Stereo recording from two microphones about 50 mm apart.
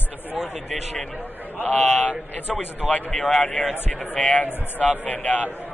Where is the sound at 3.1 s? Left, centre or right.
Centre.